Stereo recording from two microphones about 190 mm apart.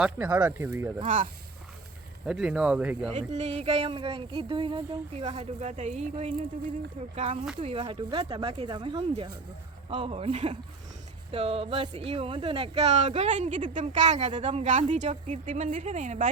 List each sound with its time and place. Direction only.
0.0 s speech: 5° right (ahead or behind)
1.0 s speech: 45° right (ahead or behind)
2.2 s speech: 5° right (ahead or behind)
3.2 s speech: 35° right (ahead or behind)